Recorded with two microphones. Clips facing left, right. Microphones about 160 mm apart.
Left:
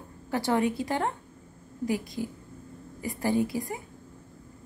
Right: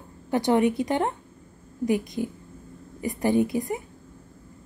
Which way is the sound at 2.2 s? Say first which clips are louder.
Right 4 dB; 25° right (ahead or behind).